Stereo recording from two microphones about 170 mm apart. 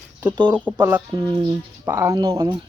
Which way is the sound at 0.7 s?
10° right (ahead or behind).